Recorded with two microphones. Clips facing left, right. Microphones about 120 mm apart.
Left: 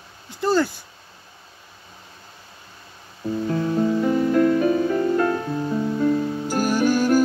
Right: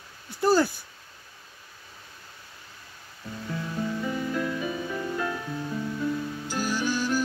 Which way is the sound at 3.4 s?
45° left (ahead or behind).